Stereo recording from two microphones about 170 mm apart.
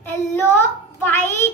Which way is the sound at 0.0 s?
15° left (ahead or behind).